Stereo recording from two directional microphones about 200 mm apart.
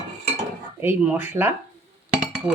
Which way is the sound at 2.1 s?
5° right (ahead or behind).